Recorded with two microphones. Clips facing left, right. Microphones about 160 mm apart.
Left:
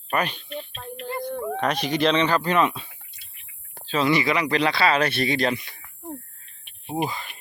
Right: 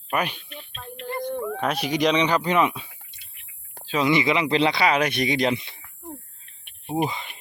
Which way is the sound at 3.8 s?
15° right (ahead or behind).